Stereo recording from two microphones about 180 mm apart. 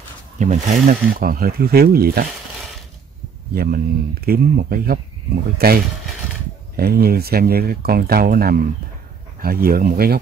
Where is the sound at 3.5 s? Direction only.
55° right (ahead or behind).